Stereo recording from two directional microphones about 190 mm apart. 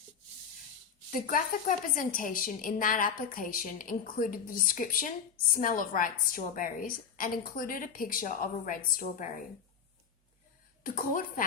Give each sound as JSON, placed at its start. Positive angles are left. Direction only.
{"t": 1.3, "sound": "a woman's voice", "side_deg": 45}
{"t": 10.8, "sound": "a woman's voice", "side_deg": 45}